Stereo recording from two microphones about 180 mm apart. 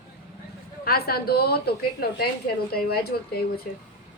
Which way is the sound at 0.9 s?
60° left (ahead or behind).